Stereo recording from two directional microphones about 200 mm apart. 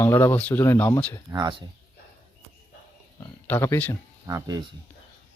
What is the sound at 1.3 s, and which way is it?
Speech, 20° right (ahead or behind).